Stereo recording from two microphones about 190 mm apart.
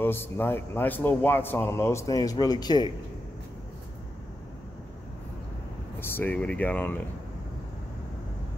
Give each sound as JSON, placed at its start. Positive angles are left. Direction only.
{"t": 0.0, "sound": "speech", "side_deg": 10}
{"t": 5.9, "sound": "speech", "side_deg": 10}